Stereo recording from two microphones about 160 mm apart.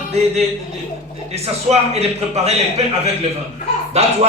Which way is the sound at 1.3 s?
40° right (ahead or behind).